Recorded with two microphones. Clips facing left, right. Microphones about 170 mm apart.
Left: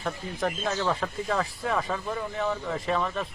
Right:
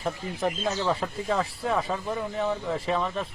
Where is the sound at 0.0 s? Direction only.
10° right (ahead or behind).